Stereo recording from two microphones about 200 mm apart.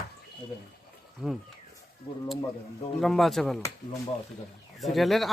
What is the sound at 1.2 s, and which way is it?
Speech, 5° right (ahead or behind).